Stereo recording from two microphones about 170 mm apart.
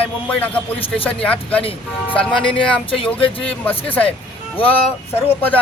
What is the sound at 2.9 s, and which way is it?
Speech, 30° left (ahead or behind).